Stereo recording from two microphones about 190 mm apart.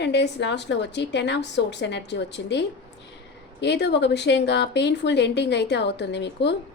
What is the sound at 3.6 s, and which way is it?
A woman's voice, 65° left (ahead or behind).